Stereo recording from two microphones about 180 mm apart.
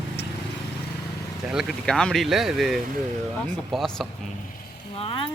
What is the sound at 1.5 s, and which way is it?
Speech, centre (ahead or behind).